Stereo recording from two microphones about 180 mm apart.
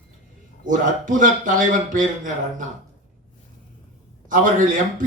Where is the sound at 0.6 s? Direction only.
45° right (ahead or behind).